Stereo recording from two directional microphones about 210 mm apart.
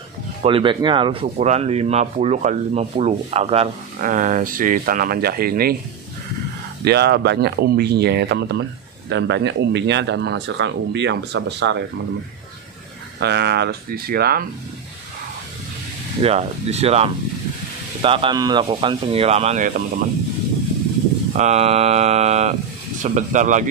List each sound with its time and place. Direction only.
0.4 s speech: 25° right (ahead or behind); by 5.8 s 45° right (ahead or behind)
6.8 s speech: 50° right (ahead or behind)
13.2 s speech: 50° right (ahead or behind)
16.2 s speech: 30° right (ahead or behind)
21.3 s speech: 35° right (ahead or behind)